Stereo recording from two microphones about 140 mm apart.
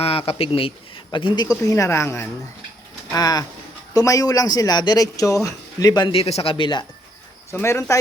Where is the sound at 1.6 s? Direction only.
20° left (ahead or behind).